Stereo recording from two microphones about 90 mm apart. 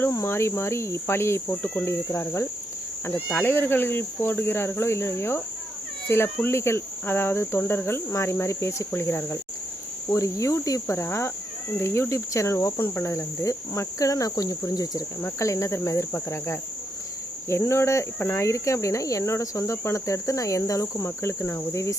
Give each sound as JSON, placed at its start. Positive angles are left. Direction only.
{"t": 0.1, "sound": "cricket", "side_deg": 35}
{"t": 3.1, "sound": "cricket", "side_deg": 15}
{"t": 17.7, "sound": "cricket", "side_deg": 30}